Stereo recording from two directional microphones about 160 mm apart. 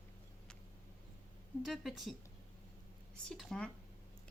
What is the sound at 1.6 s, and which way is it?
Speech, centre (ahead or behind).